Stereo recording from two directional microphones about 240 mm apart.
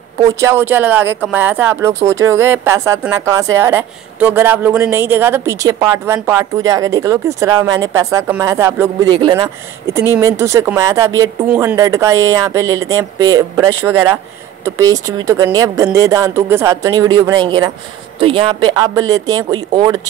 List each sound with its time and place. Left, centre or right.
0.2 s speech: centre